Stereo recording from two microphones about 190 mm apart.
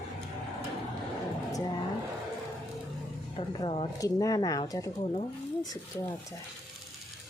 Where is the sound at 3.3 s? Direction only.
25° left (ahead or behind).